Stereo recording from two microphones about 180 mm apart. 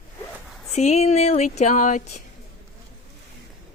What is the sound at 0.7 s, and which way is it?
Speech, 40° left (ahead or behind).